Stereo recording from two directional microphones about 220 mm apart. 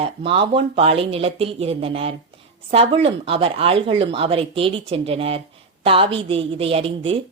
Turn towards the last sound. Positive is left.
turn(degrees=-25)  # may be behind; listen again after turning